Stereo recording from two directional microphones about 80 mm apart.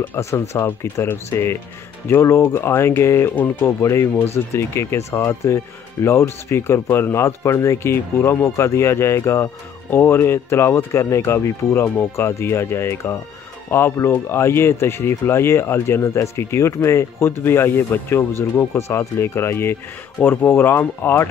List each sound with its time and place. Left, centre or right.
0.1 s speech: left